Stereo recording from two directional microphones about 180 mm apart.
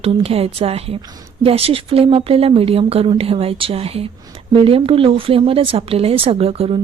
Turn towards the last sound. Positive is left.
turn(degrees=-35)  # may be behind; listen again after turning